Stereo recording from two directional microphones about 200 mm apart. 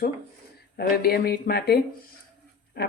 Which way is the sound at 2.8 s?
50° left (ahead or behind).